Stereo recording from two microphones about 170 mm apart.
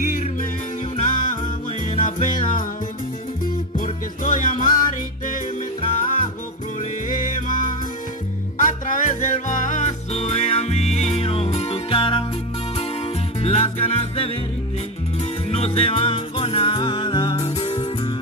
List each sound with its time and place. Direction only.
0.0 s music: 55° left (ahead or behind)
0.9 s jingle bell: 45° left (ahead or behind)
1.9 s music: 45° left (ahead or behind)
3.7 s music: 50° left (ahead or behind)
5.9 s music: 50° left (ahead or behind); by 12.3 s 30° left (ahead or behind)
13.4 s music: 35° left (ahead or behind)